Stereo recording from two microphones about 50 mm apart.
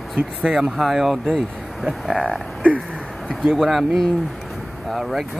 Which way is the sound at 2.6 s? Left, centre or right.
Right.